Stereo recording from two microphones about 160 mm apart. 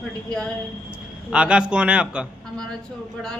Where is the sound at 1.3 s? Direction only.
5° right (ahead or behind).